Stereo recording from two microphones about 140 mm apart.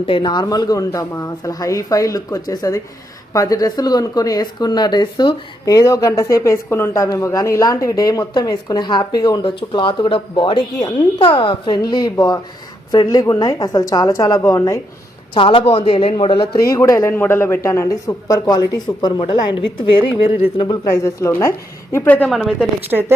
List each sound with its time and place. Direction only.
0.0 s speech: 35° left (ahead or behind)
15.4 s speech: 40° left (ahead or behind)
16.6 s speech: 25° left (ahead or behind)
21.0 s a woman's voice: 20° left (ahead or behind)
22.3 s speech: centre (ahead or behind)
22.9 s speech: 15° right (ahead or behind)